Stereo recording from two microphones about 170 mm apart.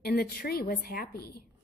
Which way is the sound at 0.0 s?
60° left (ahead or behind).